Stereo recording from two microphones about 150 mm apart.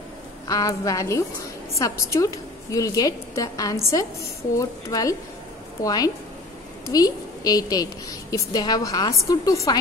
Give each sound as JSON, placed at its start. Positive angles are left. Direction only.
{"t": 0.5, "sound": "a woman's voice", "side_deg": 25}